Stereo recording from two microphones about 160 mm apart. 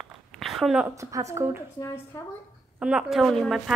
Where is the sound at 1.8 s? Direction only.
15° left (ahead or behind).